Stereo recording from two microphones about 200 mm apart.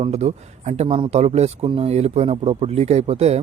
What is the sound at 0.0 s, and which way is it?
Speech, 30° right (ahead or behind).